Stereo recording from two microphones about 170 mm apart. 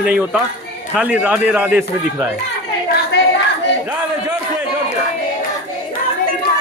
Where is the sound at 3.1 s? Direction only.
80° left.